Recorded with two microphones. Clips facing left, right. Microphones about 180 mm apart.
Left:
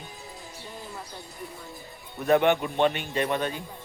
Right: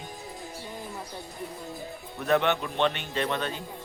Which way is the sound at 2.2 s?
10° left (ahead or behind).